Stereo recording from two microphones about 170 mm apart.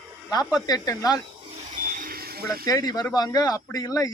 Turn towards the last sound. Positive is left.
turn(degrees=20)  # may be behind; listen again after turning